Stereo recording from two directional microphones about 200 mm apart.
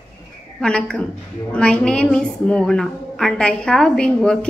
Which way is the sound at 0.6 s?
5° left (ahead or behind).